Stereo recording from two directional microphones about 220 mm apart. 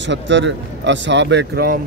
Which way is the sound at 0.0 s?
55° right (ahead or behind).